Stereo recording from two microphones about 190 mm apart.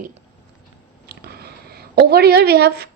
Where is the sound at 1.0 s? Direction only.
55° right (ahead or behind).